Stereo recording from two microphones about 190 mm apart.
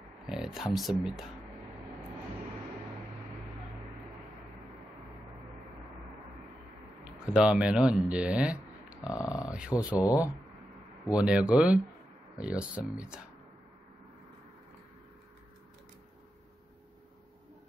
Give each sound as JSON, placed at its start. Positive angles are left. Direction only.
{"t": 0.2, "sound": "a sound", "side_deg": 0}
{"t": 1.0, "sound": "speech", "side_deg": -5}
{"t": 7.2, "sound": "speech", "side_deg": -5}
{"t": 9.2, "sound": "speech", "side_deg": 15}
{"t": 9.5, "sound": "speech", "side_deg": -5}
{"t": 9.8, "sound": "speech", "side_deg": 15}
{"t": 11.1, "sound": "speech", "side_deg": -5}